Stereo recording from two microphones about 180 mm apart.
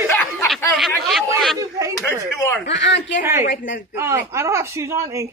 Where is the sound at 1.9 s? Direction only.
10° left (ahead or behind).